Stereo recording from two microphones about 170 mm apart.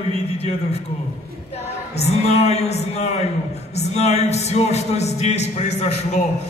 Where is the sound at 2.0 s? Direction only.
40° left (ahead or behind).